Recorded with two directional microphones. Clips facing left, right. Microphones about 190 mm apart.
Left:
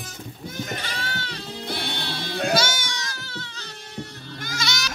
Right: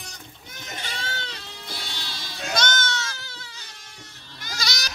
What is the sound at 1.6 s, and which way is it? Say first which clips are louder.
Music: left 8 dB; 60° left (ahead or behind).